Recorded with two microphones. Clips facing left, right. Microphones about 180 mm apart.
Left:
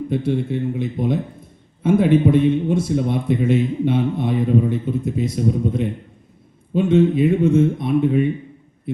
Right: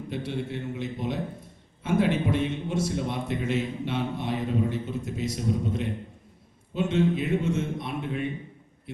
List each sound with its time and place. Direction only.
0.1 s a man's voice: 50° left (ahead or behind)